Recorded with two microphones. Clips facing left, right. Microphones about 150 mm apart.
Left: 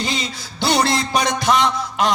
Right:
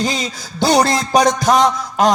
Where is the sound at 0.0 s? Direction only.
45° right (ahead or behind).